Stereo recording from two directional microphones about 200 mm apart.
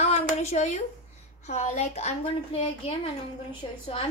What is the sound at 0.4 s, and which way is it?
A woman's voice, 35° left (ahead or behind).